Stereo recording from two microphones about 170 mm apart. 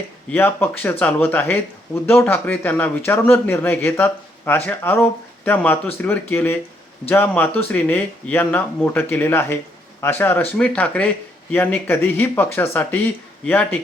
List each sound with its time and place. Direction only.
0.3 s a man's voice: 10° left (ahead or behind)